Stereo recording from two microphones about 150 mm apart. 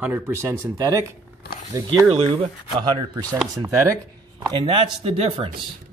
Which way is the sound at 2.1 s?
40° right (ahead or behind).